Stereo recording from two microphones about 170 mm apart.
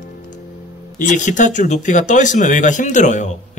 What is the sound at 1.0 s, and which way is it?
Speech, 45° left (ahead or behind).